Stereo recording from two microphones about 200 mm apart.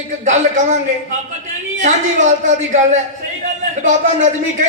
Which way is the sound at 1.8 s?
35° right (ahead or behind).